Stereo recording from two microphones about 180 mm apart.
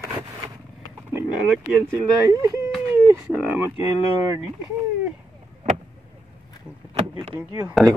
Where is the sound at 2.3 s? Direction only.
20° right (ahead or behind).